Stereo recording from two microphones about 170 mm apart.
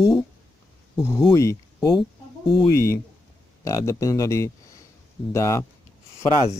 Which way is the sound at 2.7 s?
15° left (ahead or behind).